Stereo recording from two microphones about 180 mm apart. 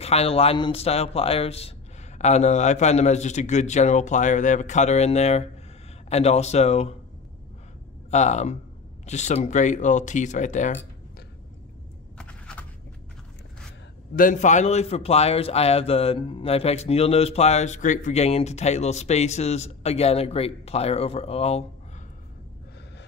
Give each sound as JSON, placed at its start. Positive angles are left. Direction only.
{"t": 0.0, "sound": "a man's voice", "side_deg": 35}
{"t": 8.1, "sound": "a man's voice", "side_deg": 40}
{"t": 12.2, "sound": "a sound", "side_deg": 5}
{"t": 14.1, "sound": "a man's voice", "side_deg": 45}